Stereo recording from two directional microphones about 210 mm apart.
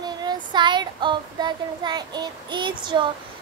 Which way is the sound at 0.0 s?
20° right (ahead or behind).